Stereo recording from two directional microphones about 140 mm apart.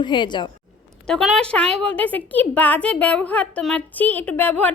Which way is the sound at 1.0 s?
Centre (ahead or behind).